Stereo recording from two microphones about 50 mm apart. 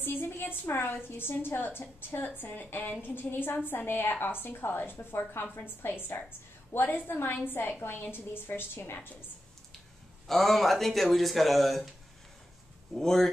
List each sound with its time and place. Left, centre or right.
0.0 s a woman's voice: left
10.2 s speech: centre
12.9 s speech: centre